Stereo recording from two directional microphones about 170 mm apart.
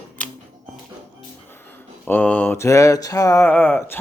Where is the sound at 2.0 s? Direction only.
10° left (ahead or behind).